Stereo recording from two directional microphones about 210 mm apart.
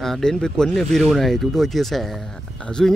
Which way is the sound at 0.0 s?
Centre (ahead or behind).